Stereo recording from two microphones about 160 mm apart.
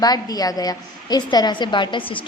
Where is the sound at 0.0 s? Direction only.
25° left (ahead or behind).